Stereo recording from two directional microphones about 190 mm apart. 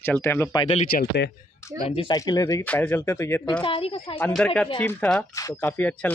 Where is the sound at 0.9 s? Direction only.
55° left (ahead or behind).